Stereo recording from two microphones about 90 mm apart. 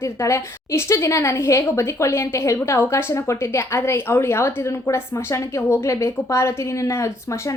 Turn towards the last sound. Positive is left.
turn(degrees=35)  # may be behind; listen again after turning